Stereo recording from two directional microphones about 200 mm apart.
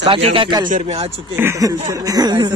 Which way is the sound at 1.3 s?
15° right (ahead or behind).